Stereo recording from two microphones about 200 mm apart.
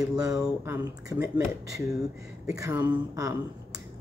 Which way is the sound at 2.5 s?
15° right (ahead or behind).